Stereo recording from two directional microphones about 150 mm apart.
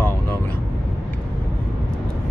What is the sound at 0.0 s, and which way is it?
Vehicle, 15° left (ahead or behind).